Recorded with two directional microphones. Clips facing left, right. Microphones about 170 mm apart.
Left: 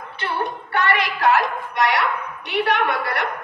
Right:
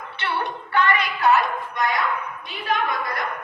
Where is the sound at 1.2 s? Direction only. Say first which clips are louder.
Even; 90° left.